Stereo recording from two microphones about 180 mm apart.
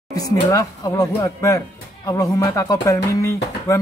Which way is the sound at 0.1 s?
20° left (ahead or behind).